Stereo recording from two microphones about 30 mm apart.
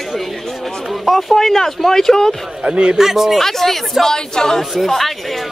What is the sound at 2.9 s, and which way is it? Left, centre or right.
Speech, centre.